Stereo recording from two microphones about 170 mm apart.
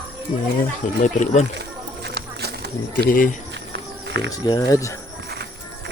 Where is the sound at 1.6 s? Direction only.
75° right (ahead or behind).